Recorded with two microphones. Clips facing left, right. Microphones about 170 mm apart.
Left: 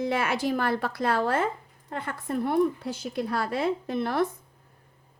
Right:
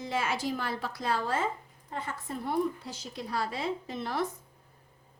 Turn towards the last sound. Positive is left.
turn(degrees=60)  # may be behind; listen again after turning